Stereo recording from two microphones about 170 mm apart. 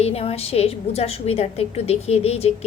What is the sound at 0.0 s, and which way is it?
A woman's voice, 35° left (ahead or behind).